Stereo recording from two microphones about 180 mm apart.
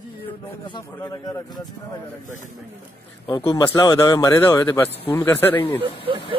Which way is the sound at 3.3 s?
25° left (ahead or behind).